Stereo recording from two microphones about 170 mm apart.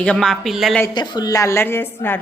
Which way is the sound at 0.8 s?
25° left (ahead or behind).